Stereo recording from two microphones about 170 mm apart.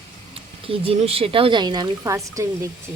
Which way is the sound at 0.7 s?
35° right (ahead or behind).